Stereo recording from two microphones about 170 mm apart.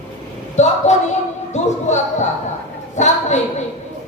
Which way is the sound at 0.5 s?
45° left (ahead or behind).